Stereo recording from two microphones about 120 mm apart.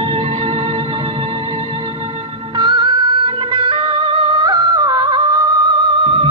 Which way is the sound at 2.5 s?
40° right (ahead or behind).